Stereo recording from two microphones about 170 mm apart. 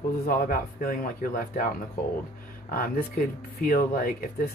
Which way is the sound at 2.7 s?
55° left (ahead or behind).